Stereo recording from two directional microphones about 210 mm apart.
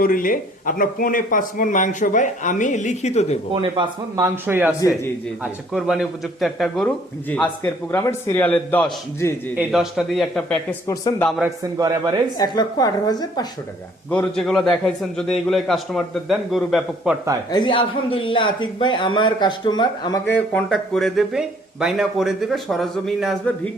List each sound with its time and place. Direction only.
0.0 s speech: 40° left (ahead or behind)
3.5 s a man's voice: 20° right (ahead or behind); by 10.8 s 5° left (ahead or behind)
10.8 s a man's voice: 15° left (ahead or behind)
11.4 s speech: 20° right (ahead or behind)
12.4 s speech: 20° left (ahead or behind)
14.1 s a man's voice: 5° left (ahead or behind)
17.5 s speech: 25° left (ahead or behind)
20.3 s a man's voice: 5° left (ahead or behind)